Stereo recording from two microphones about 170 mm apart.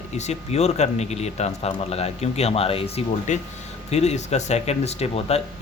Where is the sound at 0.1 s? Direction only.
40° left (ahead or behind).